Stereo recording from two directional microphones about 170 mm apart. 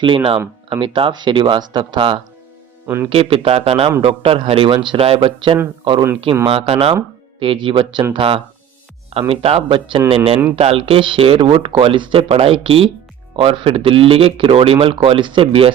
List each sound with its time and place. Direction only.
0.0 s speech: 30° right (ahead or behind)
2.8 s speech: 10° right (ahead or behind)
3.1 s speech: 35° right (ahead or behind)